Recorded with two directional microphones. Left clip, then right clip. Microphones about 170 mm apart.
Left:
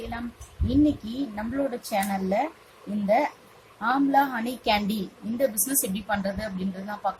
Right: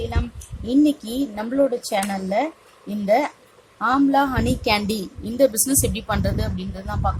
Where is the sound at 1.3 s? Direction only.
45° right (ahead or behind).